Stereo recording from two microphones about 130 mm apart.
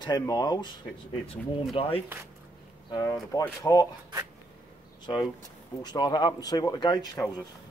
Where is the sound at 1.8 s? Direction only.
40° left (ahead or behind).